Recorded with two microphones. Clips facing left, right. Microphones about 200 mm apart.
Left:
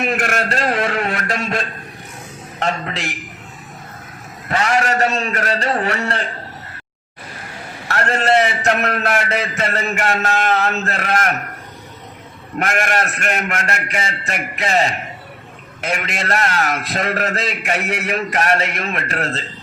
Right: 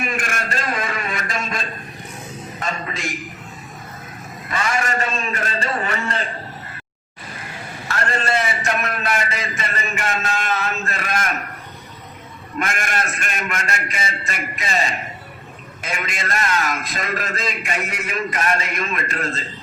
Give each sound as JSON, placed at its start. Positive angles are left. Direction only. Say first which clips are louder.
{"t": 0.0, "sound": "a sound", "louder": "left 6 dB", "side_deg": 70}
{"t": 4.4, "sound": "a man's voice", "louder": "left 5 dB", "side_deg": 65}
{"t": 7.9, "sound": "a man's voice", "louder": "left 6 dB", "side_deg": 65}
{"t": 12.5, "sound": "a man's voice", "louder": "left 5 dB", "side_deg": 65}